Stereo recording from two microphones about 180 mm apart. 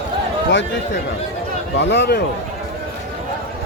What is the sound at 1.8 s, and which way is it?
Speech, 70° left (ahead or behind).